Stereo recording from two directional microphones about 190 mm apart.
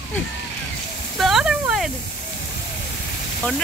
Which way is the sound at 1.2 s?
5° right (ahead or behind).